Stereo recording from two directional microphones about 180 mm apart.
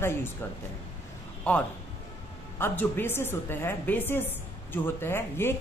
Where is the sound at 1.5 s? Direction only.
5° left (ahead or behind).